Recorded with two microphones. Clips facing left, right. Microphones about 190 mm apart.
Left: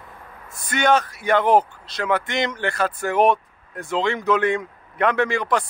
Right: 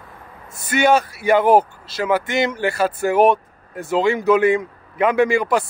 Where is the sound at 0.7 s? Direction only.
5° right (ahead or behind).